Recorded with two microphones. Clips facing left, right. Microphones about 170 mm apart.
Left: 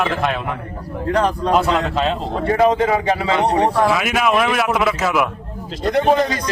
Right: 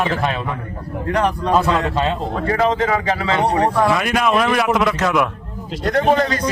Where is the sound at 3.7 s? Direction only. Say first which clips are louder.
Even; 5° left (ahead or behind).